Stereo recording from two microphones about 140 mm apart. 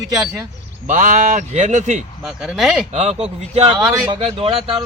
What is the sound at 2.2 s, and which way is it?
Speech, centre (ahead or behind).